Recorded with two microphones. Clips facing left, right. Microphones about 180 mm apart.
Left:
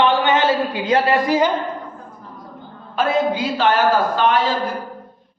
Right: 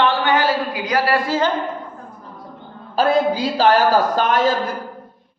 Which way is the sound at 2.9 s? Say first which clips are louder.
Right 2 dB; 35° right (ahead or behind).